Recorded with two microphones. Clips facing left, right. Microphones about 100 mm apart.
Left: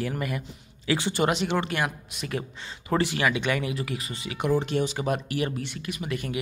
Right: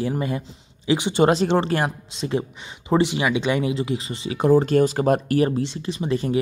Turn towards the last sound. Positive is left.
turn(degrees=-30)  # may be behind; listen again after turning